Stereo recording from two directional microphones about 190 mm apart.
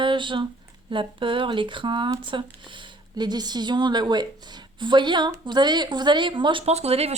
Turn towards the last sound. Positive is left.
turn(degrees=-35)  # may be behind; listen again after turning